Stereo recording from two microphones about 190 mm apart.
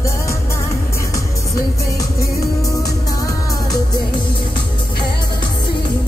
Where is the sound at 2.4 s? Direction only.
15° left (ahead or behind).